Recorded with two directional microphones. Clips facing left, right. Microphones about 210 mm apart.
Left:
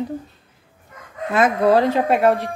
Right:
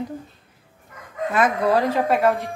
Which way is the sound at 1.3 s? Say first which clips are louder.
Left 4 dB; 25° left (ahead or behind).